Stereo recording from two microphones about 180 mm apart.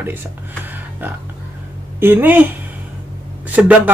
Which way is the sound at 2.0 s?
10° right (ahead or behind).